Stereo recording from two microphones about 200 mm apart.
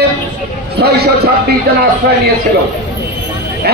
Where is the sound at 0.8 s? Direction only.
55° right (ahead or behind).